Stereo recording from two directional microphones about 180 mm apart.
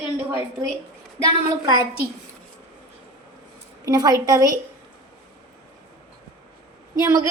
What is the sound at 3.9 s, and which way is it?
Speech, 20° right (ahead or behind).